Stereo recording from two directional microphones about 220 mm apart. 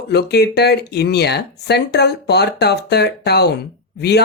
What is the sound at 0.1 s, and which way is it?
Speech, 50° left (ahead or behind).